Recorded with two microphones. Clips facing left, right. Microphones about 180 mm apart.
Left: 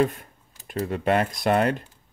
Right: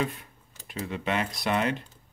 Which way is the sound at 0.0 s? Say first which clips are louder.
Left 8 dB; 45° left (ahead or behind).